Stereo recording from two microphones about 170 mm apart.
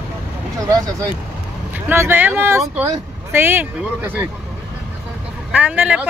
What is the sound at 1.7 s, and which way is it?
Speech, 15° right (ahead or behind).